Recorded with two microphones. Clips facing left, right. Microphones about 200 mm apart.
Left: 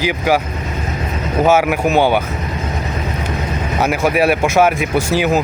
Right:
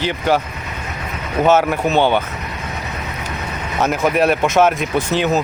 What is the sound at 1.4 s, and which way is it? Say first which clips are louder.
Speech: left 1 dB; 10° left (ahead or behind).